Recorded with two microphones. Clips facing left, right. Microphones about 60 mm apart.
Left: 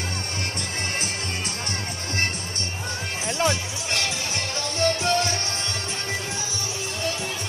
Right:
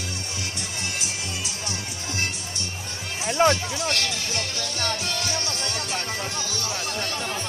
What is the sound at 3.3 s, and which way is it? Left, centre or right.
Music, right.